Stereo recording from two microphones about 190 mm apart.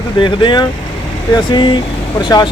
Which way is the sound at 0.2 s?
25° left (ahead or behind).